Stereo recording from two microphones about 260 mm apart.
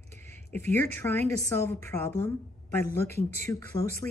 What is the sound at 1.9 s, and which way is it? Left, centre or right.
Speech, left.